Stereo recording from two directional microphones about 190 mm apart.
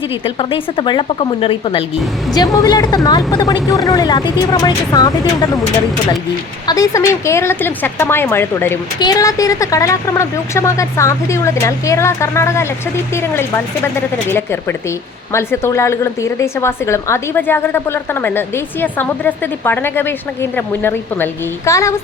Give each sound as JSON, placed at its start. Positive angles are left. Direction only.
{"t": 0.3, "sound": "speech", "side_deg": 30}
{"t": 6.7, "sound": "speech", "side_deg": 15}